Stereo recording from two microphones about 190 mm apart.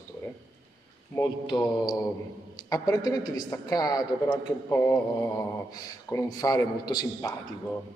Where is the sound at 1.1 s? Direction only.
20° left (ahead or behind).